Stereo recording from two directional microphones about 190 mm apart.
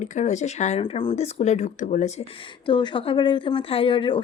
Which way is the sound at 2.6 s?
25° left (ahead or behind).